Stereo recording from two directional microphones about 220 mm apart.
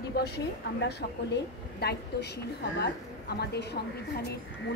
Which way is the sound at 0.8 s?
50° left (ahead or behind).